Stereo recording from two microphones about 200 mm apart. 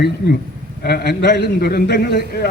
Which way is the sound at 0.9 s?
55° left (ahead or behind).